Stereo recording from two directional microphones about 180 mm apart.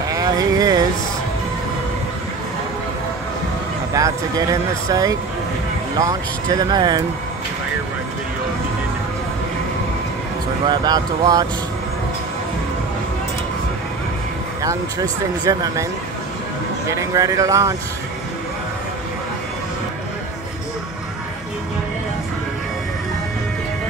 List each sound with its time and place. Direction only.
0.1 s vehicle: 20° right (ahead or behind)
3.9 s speech: 20° right (ahead or behind)
10.7 s speech: 20° right (ahead or behind)
14.6 s speech: 20° right (ahead or behind)